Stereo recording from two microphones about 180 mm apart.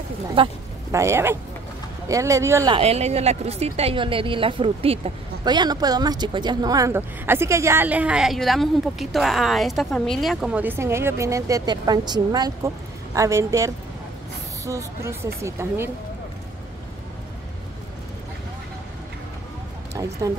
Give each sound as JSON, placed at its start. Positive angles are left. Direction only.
{"t": 0.4, "sound": "speech", "side_deg": -30}
{"t": 0.9, "sound": "a woman's voice", "side_deg": -15}
{"t": 2.7, "sound": "a woman's voice", "side_deg": -35}
{"t": 19.9, "sound": "speech", "side_deg": -20}